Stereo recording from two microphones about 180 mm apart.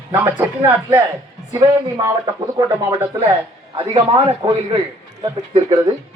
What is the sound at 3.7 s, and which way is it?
Speech, 30° right (ahead or behind).